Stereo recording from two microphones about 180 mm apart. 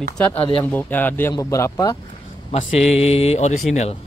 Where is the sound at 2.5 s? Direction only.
30° left (ahead or behind).